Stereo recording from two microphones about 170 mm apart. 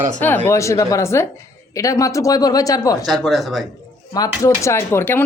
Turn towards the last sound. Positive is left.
turn(degrees=15)  # may be behind; listen again after turning